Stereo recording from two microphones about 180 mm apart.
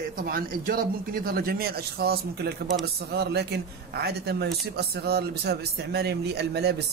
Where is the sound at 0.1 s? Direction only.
55° right (ahead or behind).